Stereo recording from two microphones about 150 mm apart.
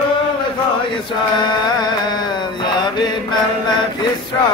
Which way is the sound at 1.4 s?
30° left (ahead or behind).